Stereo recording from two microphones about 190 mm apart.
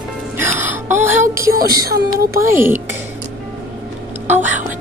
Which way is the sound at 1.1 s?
45° right (ahead or behind).